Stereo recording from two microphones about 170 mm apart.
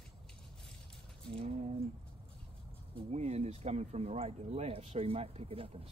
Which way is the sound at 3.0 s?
40° right (ahead or behind).